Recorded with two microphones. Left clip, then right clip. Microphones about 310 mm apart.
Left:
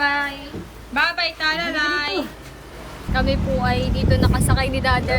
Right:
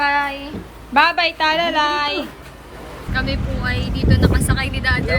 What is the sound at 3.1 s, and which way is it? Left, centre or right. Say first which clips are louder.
Speech: left 2 dB; centre.